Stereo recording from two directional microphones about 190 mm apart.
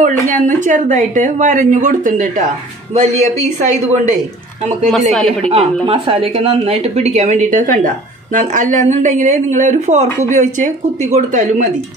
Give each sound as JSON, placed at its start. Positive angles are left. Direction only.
{"t": 0.0, "sound": "speech", "side_deg": -40}
{"t": 5.1, "sound": "speech", "side_deg": 0}
{"t": 5.5, "sound": "speech", "side_deg": -30}